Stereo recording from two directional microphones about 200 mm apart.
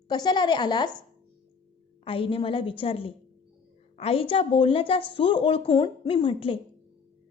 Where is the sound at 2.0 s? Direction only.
25° left (ahead or behind).